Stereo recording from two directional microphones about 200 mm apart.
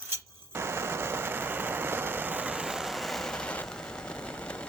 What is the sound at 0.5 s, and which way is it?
Vehicle, 10° right (ahead or behind).